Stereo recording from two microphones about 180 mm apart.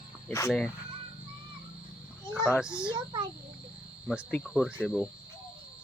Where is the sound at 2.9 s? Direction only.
25° right (ahead or behind).